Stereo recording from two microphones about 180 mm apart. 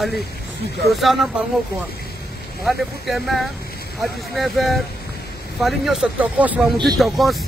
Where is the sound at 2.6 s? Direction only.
Centre (ahead or behind).